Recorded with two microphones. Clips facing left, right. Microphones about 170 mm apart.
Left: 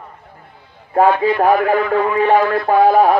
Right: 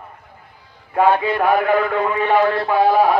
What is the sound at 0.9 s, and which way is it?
A man's voice, 40° left (ahead or behind).